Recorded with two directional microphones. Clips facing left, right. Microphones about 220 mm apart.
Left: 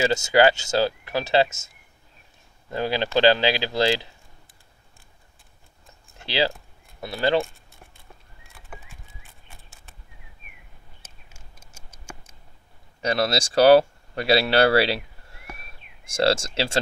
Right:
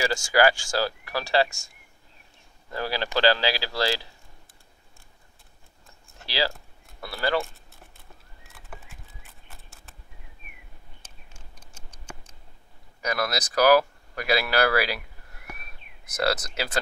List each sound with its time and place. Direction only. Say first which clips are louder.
0.0 s speech: left 4 dB; 20° left (ahead or behind)
2.7 s speech: left 5 dB; 20° left (ahead or behind)
6.2 s speech: left 4 dB; 20° left (ahead or behind)
9.5 s a sound: even; centre (ahead or behind)
11.5 s a sound: right 1 dB; 10° left (ahead or behind)
13.0 s speech: left 5 dB; 30° left (ahead or behind)